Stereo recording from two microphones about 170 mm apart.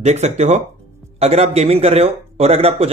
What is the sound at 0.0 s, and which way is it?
A man's voice, 40° right (ahead or behind).